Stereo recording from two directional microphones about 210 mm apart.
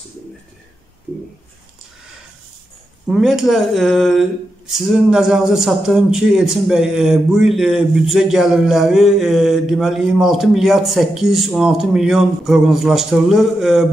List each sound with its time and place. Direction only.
3.1 s speech: centre (ahead or behind)